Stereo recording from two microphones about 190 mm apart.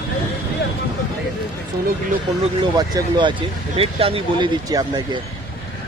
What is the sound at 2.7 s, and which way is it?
Speech, 20° right (ahead or behind).